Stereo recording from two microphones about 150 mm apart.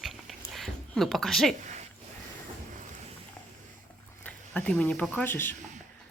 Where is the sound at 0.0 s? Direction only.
Centre (ahead or behind).